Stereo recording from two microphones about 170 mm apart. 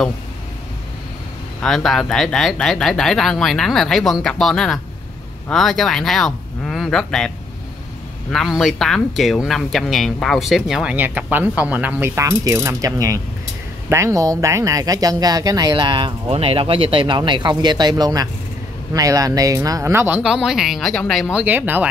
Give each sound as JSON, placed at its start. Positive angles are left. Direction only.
{"t": 1.6, "sound": "speech", "side_deg": 0}